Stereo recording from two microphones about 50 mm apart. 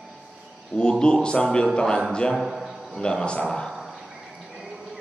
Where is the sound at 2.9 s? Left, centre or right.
Centre.